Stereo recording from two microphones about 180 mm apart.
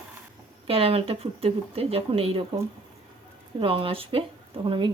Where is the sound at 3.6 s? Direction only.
30° right (ahead or behind).